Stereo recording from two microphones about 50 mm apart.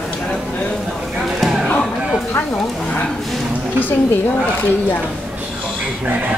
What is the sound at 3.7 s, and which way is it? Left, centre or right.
A woman's voice, left.